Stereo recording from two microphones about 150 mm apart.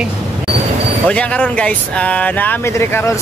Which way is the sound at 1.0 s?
10° left (ahead or behind).